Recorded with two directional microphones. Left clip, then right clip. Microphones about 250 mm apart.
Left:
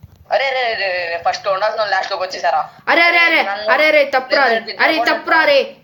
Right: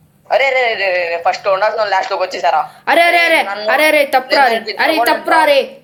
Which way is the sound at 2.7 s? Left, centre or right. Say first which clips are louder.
Even; centre.